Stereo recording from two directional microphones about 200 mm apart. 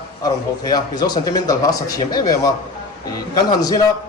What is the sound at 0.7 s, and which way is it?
Speech, 20° left (ahead or behind).